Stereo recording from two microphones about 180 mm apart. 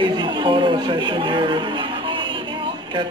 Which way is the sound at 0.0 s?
25° right (ahead or behind).